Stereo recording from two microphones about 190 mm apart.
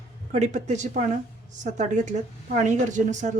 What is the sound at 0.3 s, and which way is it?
Speech, 35° right (ahead or behind).